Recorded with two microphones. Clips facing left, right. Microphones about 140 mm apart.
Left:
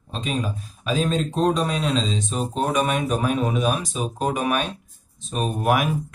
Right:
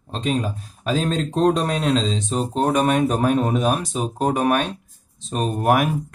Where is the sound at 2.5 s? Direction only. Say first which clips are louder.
Right 4 dB; 60° right (ahead or behind).